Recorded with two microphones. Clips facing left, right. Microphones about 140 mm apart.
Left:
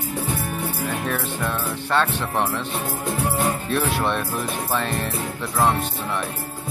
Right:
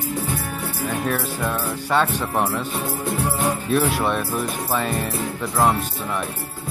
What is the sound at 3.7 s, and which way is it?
Speech, 5° right (ahead or behind).